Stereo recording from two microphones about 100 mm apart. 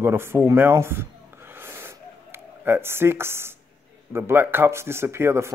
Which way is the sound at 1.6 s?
25° right (ahead or behind).